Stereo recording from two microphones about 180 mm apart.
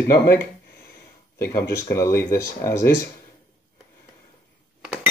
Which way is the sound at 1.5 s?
15° left (ahead or behind).